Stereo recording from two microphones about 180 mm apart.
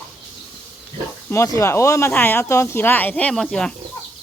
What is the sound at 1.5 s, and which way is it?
Speech, 15° left (ahead or behind).